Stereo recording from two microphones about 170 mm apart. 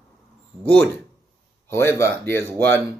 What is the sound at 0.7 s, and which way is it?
Speech, 5° left (ahead or behind).